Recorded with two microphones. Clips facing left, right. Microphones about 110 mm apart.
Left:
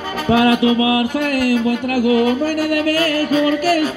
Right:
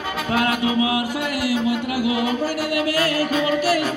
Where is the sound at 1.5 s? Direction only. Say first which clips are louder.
Left 5 dB; 45° left (ahead or behind).